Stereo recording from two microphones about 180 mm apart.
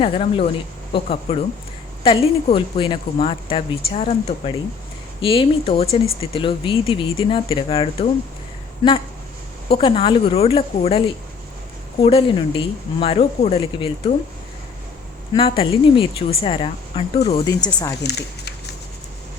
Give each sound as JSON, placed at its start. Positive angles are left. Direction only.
{"t": 0.0, "sound": "speech", "side_deg": 30}
{"t": 9.7, "sound": "speech", "side_deg": 30}
{"t": 12.0, "sound": "speech", "side_deg": 30}
{"t": 15.4, "sound": "speech", "side_deg": 30}
{"t": 18.0, "sound": "a sound", "side_deg": 65}